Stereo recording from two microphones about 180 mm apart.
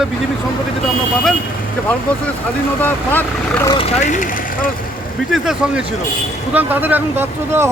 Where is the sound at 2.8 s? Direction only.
10° left (ahead or behind).